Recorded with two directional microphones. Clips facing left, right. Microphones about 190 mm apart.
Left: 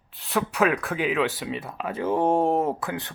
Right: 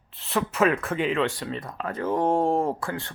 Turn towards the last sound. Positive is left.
turn(degrees=20)  # may be behind; listen again after turning